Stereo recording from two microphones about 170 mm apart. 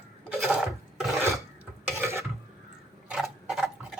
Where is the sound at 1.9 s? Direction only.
15° right (ahead or behind).